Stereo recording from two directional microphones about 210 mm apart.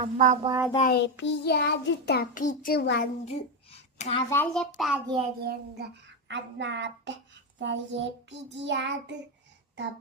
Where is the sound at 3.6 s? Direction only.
30° left (ahead or behind).